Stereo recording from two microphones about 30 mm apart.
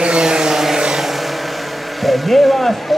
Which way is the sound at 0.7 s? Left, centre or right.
Right.